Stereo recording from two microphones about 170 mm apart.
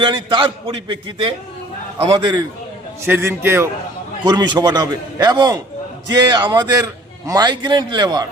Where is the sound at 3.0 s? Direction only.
15° right (ahead or behind).